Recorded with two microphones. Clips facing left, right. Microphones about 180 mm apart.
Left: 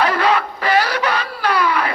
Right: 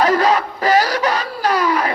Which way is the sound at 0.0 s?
40° right (ahead or behind).